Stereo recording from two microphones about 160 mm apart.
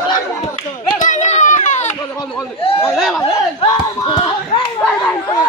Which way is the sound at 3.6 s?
30° left (ahead or behind).